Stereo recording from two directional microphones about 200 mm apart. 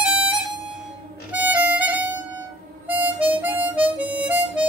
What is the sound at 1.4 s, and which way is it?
Harmonica, 10° right (ahead or behind).